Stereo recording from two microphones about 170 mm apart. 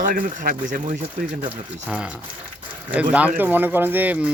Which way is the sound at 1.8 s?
5° right (ahead or behind).